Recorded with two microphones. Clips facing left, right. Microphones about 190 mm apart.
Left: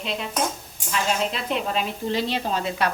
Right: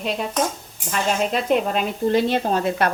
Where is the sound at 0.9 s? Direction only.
50° right (ahead or behind).